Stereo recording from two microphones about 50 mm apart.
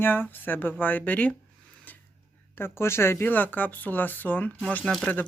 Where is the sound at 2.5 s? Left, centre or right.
Left.